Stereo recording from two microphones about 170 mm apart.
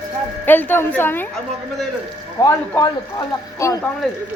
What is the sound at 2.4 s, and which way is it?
A man's voice, 20° left (ahead or behind).